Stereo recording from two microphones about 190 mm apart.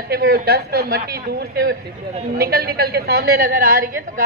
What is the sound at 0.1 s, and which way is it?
A woman's voice, 55° right (ahead or behind).